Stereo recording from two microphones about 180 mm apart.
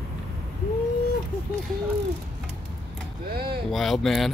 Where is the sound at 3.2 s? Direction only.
60° right (ahead or behind).